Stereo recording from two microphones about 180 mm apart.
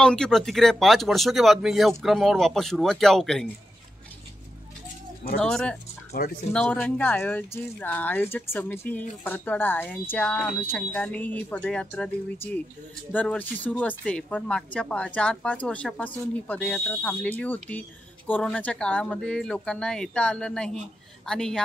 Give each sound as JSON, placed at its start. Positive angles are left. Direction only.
{"t": 0.0, "sound": "speech", "side_deg": 5}
{"t": 5.4, "sound": "speech", "side_deg": 5}
{"t": 6.2, "sound": "speech", "side_deg": 55}
{"t": 6.5, "sound": "speech", "side_deg": 5}
{"t": 13.1, "sound": "speech", "side_deg": 10}